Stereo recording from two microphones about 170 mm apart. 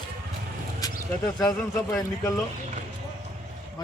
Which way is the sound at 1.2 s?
20° left (ahead or behind).